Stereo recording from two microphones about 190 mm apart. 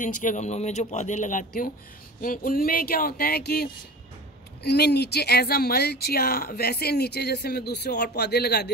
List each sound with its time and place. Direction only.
0.0 s speech: 45° left (ahead or behind); by 8.7 s 60° left (ahead or behind)